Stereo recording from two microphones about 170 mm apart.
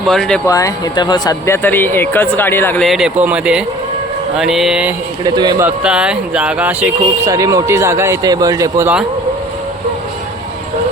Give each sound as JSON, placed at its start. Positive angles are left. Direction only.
{"t": 0.1, "sound": "speech", "side_deg": 5}
{"t": 0.4, "sound": "speech", "side_deg": 20}
{"t": 2.8, "sound": "speech", "side_deg": 0}
{"t": 5.2, "sound": "a man's voice", "side_deg": -25}
{"t": 5.6, "sound": "speech", "side_deg": -5}